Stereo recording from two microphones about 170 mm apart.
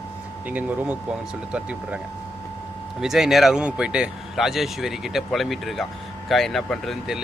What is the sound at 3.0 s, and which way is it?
Speech, centre (ahead or behind).